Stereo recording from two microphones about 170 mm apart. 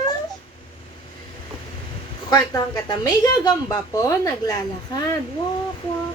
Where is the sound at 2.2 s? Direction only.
25° left (ahead or behind).